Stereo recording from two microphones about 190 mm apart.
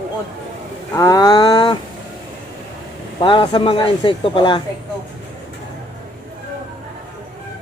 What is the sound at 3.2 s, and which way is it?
Speech, 25° left (ahead or behind).